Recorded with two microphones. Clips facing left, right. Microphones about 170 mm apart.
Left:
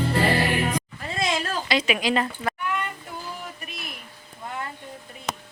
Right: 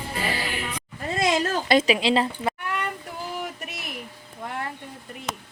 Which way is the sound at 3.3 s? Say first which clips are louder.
Right 5 dB; 75° right (ahead or behind).